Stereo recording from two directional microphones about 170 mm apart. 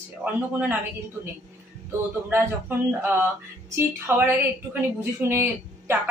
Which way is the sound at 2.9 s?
15° right (ahead or behind).